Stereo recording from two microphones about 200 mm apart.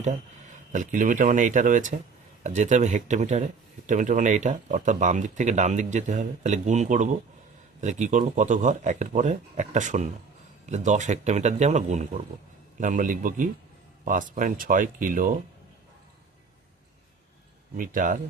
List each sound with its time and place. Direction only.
0.5 s speech: 40° right (ahead or behind)
17.7 s speech: 45° right (ahead or behind)